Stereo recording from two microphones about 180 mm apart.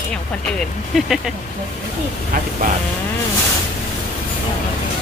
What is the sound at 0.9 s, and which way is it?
Speech, centre (ahead or behind).